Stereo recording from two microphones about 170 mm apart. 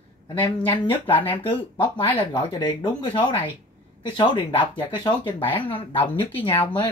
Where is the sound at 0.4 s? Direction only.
10° left (ahead or behind).